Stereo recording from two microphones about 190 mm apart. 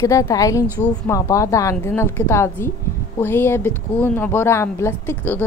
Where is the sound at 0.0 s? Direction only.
15° left (ahead or behind).